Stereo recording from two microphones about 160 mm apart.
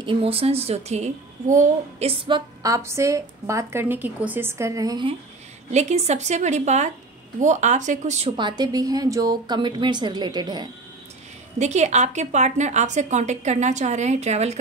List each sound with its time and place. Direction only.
0.0 s a woman's voice: 35° right (ahead or behind)
5.7 s a woman's voice: 45° right (ahead or behind)
8.4 s a woman's voice: 25° right (ahead or behind)
11.5 s a woman's voice: 45° right (ahead or behind)